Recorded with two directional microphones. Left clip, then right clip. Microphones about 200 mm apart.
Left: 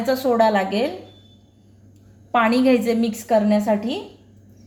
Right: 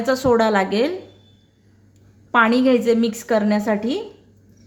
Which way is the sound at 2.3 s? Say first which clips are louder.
Right 2 dB; 20° right (ahead or behind).